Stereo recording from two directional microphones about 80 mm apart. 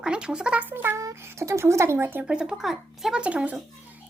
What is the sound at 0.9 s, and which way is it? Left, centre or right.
Speech, right.